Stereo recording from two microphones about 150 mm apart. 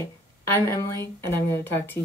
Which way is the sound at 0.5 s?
15° left (ahead or behind).